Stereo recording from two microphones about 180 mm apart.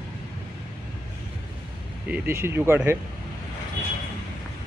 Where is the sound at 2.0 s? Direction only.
10° right (ahead or behind).